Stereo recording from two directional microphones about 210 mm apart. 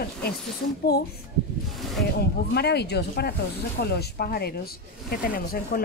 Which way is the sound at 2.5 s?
50° left (ahead or behind).